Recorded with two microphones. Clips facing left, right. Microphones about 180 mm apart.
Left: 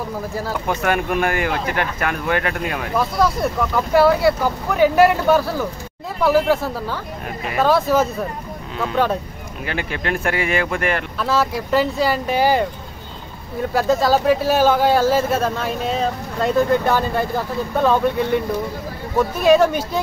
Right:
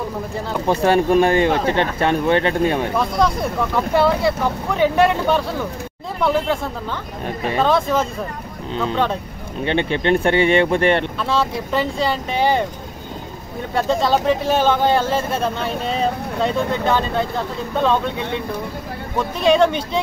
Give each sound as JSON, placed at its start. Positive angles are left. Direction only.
{"t": 0.7, "sound": "speech", "side_deg": -30}
{"t": 3.0, "sound": "speech", "side_deg": 0}
{"t": 7.2, "sound": "speech", "side_deg": -30}
{"t": 7.6, "sound": "speech", "side_deg": 5}
{"t": 9.7, "sound": "speech", "side_deg": -30}
{"t": 11.1, "sound": "speech", "side_deg": 5}
{"t": 13.7, "sound": "speech", "side_deg": 5}
{"t": 19.1, "sound": "speech", "side_deg": 5}